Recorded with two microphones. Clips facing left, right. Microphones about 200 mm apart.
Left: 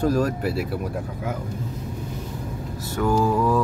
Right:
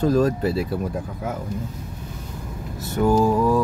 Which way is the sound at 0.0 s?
25° right (ahead or behind).